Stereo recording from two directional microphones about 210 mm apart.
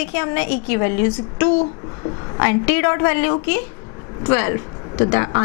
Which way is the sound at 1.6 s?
25° left (ahead or behind).